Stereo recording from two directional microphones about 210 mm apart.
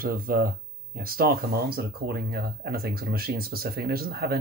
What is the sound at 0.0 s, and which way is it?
Speech, 45° right (ahead or behind).